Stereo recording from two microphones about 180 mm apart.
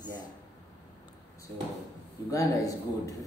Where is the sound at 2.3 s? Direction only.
20° left (ahead or behind).